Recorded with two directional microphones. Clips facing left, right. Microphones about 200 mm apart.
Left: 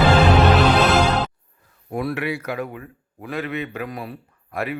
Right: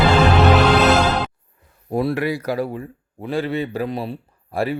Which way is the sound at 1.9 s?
30° right (ahead or behind).